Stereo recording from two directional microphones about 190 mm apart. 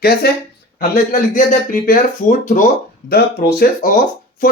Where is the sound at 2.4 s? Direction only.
40° left (ahead or behind).